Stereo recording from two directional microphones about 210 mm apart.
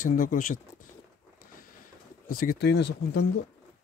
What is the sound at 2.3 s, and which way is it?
Speech, 40° left (ahead or behind).